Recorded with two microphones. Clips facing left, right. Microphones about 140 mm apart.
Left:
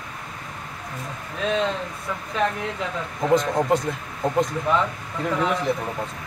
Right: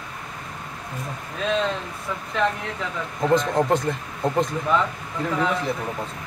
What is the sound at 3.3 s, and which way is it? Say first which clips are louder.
Speech: even; centre (ahead or behind).